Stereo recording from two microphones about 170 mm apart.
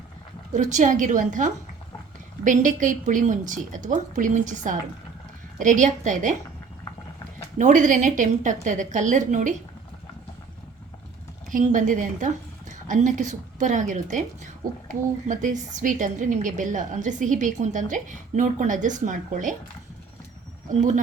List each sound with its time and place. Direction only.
0.5 s a woman's voice: 45° right (ahead or behind)
7.6 s a woman's voice: 50° right (ahead or behind)
11.5 s a woman's voice: 50° right (ahead or behind)